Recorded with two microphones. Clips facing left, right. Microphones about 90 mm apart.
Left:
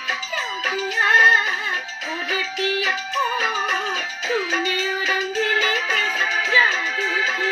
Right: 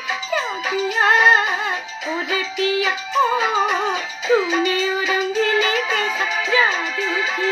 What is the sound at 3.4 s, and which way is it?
Music, 20° right (ahead or behind).